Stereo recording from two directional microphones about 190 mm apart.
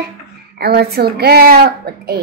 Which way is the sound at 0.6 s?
55° right (ahead or behind).